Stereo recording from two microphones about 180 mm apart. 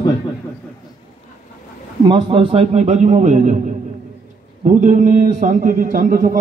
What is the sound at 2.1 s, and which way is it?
A man's voice, 30° right (ahead or behind).